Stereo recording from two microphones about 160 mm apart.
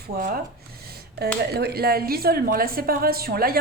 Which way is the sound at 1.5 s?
80° right.